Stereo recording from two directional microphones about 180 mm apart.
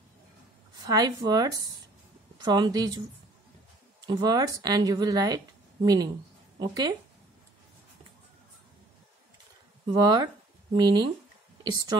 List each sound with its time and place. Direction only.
0.7 s a woman's voice: 20° right (ahead or behind)
4.0 s a woman's voice: 20° right (ahead or behind)
9.8 s a woman's voice: 25° right (ahead or behind)